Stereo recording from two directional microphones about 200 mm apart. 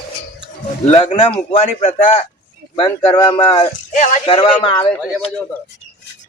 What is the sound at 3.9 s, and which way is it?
Speech, 40° left (ahead or behind).